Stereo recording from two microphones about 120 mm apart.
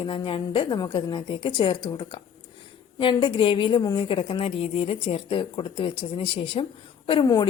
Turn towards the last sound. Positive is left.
turn(degrees=35)  # may be behind; listen again after turning